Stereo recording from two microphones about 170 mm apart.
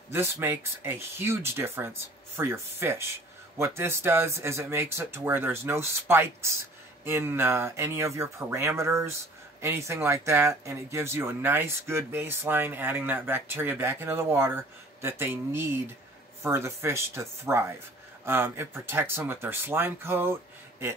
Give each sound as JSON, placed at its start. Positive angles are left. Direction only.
{"t": 0.1, "sound": "speech", "side_deg": -15}